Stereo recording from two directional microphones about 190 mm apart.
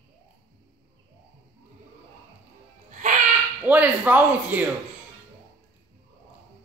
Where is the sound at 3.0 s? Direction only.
40° right (ahead or behind).